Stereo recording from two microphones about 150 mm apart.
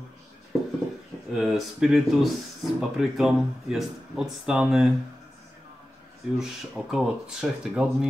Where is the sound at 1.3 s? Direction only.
Centre (ahead or behind).